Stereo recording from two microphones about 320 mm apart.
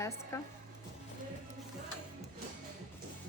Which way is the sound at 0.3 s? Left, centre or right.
Centre.